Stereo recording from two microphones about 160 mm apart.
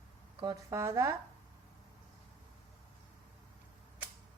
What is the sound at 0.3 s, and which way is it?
Speech, 25° right (ahead or behind).